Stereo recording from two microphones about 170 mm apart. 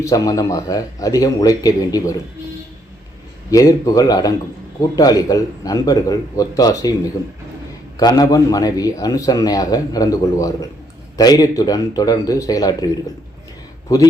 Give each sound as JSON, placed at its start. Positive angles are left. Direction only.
{"t": 0.0, "sound": "a man's voice", "side_deg": 20}
{"t": 3.5, "sound": "a man's voice", "side_deg": 20}